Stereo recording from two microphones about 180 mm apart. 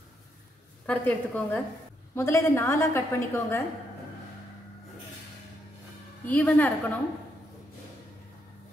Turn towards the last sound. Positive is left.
turn(degrees=10)  # may be behind; listen again after turning